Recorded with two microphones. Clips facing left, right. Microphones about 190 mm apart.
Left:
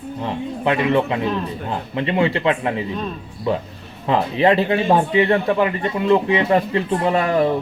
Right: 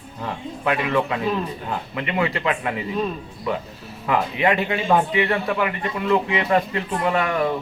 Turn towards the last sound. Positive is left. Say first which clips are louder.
# left 4 dB
turn(degrees=30)  # may be behind; listen again after turning